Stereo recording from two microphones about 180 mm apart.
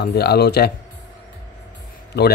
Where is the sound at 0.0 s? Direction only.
65° left (ahead or behind).